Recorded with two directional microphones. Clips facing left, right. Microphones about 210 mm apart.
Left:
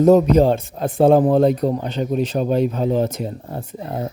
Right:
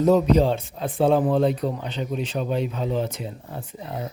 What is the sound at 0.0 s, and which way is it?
A man's voice, 45° left (ahead or behind).